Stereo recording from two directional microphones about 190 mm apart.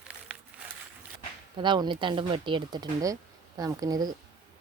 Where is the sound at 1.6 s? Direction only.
25° right (ahead or behind).